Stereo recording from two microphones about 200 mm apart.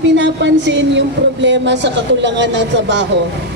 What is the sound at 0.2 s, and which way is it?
A woman's voice, 65° right (ahead or behind).